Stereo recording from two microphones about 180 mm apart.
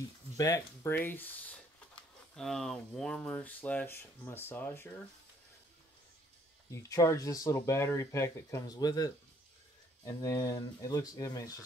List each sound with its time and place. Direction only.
0.4 s speech: 15° left (ahead or behind)
6.7 s speech: 15° left (ahead or behind)